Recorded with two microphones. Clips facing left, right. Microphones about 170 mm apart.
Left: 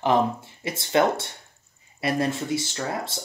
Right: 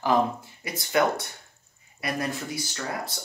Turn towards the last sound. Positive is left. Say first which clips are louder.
# left 3 dB
turn(degrees=25)  # may be behind; listen again after turning